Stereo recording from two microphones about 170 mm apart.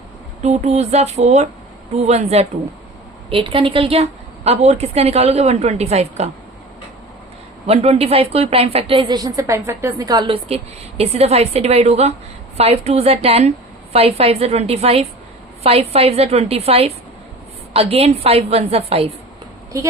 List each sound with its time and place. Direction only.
0.4 s a woman's voice: 40° right (ahead or behind)
7.7 s a woman's voice: 35° right (ahead or behind)
19.7 s a woman's voice: 20° right (ahead or behind)